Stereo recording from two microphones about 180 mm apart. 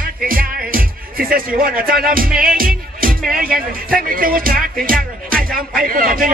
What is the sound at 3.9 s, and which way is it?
A man's voice, 50° right (ahead or behind).